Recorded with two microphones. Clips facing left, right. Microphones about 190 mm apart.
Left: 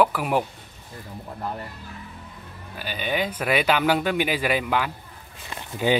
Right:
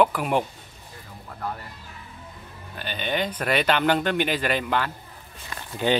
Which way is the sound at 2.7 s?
5° left (ahead or behind).